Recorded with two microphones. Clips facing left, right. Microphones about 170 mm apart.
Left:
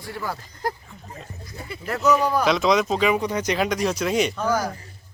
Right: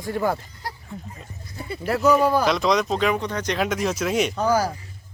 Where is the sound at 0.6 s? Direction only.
50° left (ahead or behind).